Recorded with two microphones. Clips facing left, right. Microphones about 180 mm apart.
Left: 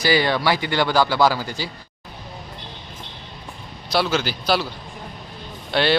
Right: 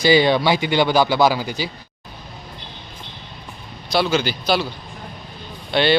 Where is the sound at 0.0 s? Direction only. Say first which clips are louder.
Right 4 dB; 20° right (ahead or behind).